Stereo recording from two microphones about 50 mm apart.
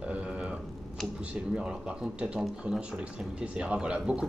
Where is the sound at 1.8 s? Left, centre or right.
Right.